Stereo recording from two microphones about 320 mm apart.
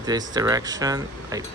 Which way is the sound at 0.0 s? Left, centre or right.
Centre.